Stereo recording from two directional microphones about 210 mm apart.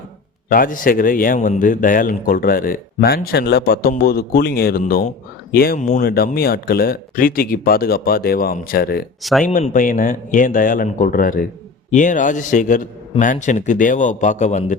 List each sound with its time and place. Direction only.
0.4 s a man's voice: 40° left (ahead or behind)
9.4 s a man's voice: 35° left (ahead or behind)